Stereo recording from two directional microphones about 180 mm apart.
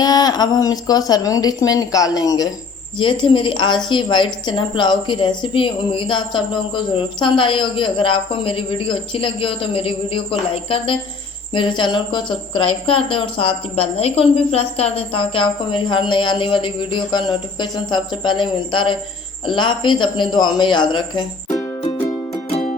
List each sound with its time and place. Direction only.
0.0 s speech: 20° left (ahead or behind)